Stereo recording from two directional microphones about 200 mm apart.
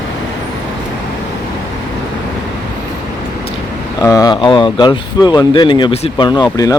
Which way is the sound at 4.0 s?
15° left (ahead or behind).